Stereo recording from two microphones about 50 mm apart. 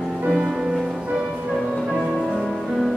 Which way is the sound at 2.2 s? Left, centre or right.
Centre.